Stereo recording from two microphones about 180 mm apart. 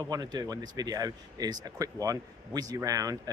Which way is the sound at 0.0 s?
20° right (ahead or behind).